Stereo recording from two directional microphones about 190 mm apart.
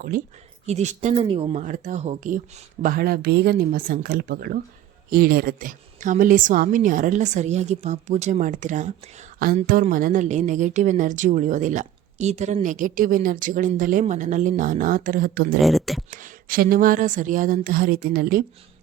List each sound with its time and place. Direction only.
0.7 s a woman's voice: 35° right (ahead or behind)
1.6 s a woman's voice: 40° right (ahead or behind)
2.8 s a woman's voice: 50° right (ahead or behind)
15.6 s speech: centre (ahead or behind)
16.0 s a woman's voice: 45° right (ahead or behind)